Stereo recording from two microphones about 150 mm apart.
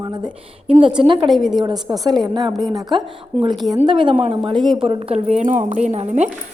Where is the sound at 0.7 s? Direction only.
35° right (ahead or behind).